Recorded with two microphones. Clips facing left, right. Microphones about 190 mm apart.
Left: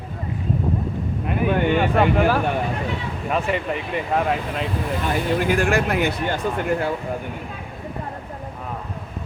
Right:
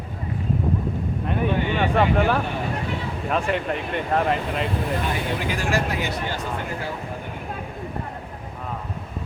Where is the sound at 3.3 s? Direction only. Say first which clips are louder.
Left 1 dB; centre (ahead or behind).